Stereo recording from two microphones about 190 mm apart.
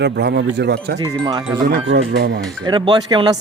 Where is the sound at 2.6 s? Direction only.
25° right (ahead or behind).